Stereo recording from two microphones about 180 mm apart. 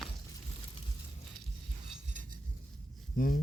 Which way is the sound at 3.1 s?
50° left (ahead or behind).